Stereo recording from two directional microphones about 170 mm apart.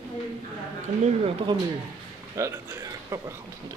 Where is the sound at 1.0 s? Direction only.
35° right (ahead or behind).